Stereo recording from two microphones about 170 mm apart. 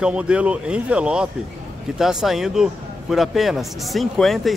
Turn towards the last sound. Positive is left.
turn(degrees=0)  # may be behind; listen again after turning